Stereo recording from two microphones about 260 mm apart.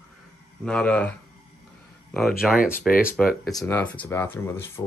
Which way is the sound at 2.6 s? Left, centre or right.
Left.